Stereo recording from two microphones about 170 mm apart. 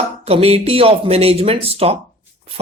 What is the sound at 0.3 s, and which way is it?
Speech, 35° right (ahead or behind).